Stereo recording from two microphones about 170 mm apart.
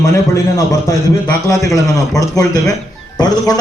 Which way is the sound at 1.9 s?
20° left (ahead or behind).